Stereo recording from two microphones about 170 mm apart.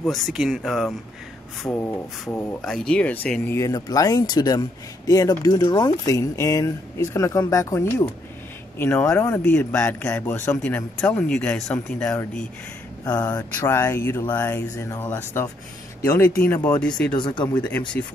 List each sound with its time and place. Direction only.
0.0 s speech: centre (ahead or behind)
1.6 s speech: 35° left (ahead or behind)
2.2 s speech: 5° left (ahead or behind)
3.5 s speech: 20° left (ahead or behind)
13.0 s speech: 20° left (ahead or behind); by 17.2 s 5° left (ahead or behind)
17.2 s speech: 25° left (ahead or behind)
17.6 s speech: 10° left (ahead or behind)